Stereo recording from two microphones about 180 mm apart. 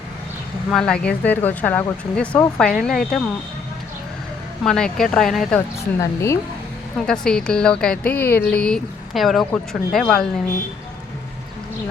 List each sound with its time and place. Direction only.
0.7 s a woman's voice: 5° left (ahead or behind)
4.6 s a woman's voice: 5° left (ahead or behind)
5.5 s speech: 15° left (ahead or behind)
7.0 s a woman's voice: 5° left (ahead or behind)